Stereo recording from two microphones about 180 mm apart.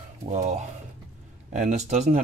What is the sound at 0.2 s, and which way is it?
Speech, 40° right (ahead or behind).